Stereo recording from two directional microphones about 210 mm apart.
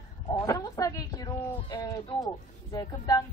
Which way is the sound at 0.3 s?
15° left (ahead or behind).